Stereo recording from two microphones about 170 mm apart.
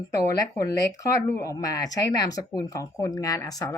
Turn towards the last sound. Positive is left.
turn(degrees=20)  # may be behind; listen again after turning